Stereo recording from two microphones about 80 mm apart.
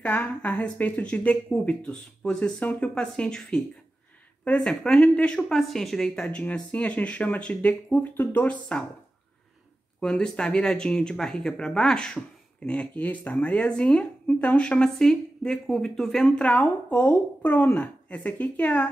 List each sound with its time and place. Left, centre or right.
0.0 s a woman's voice: centre
9.9 s a woman's voice: centre